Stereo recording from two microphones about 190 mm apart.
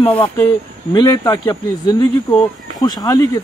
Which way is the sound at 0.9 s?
20° left (ahead or behind).